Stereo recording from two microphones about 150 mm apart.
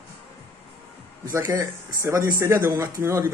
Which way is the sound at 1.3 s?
20° right (ahead or behind).